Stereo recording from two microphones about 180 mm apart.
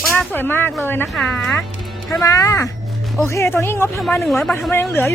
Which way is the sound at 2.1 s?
15° left (ahead or behind).